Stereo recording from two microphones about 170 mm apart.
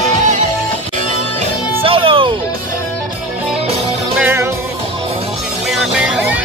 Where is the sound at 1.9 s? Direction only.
30° right (ahead or behind).